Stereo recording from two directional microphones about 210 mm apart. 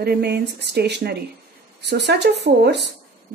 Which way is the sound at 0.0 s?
50° right (ahead or behind).